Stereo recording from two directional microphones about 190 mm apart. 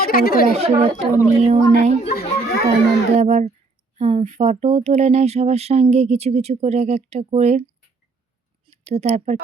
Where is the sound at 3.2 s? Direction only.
35° right (ahead or behind).